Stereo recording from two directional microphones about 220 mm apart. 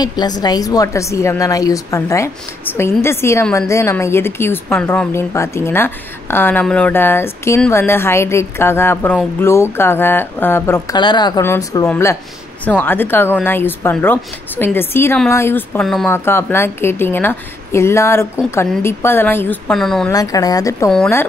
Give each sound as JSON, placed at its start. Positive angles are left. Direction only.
{"t": 0.0, "sound": "a woman's voice", "side_deg": 20}
{"t": 20.1, "sound": "a woman's voice", "side_deg": 15}